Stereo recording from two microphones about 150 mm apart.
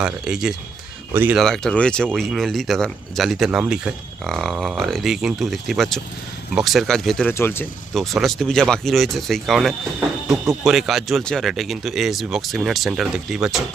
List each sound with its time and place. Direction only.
0.0 s speech: 5° right (ahead or behind)
1.4 s speech: 5° left (ahead or behind)
4.2 s speech: 5° left (ahead or behind)
7.3 s speech: 15° left (ahead or behind)
7.9 s speech: centre (ahead or behind)